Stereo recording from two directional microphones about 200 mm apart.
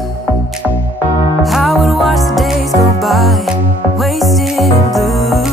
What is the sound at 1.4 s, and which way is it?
Music, centre (ahead or behind).